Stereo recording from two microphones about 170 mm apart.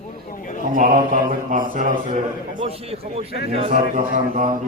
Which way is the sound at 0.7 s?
55° right (ahead or behind).